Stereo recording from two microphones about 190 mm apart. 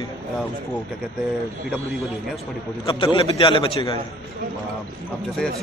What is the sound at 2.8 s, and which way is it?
A man's voice, 30° left (ahead or behind).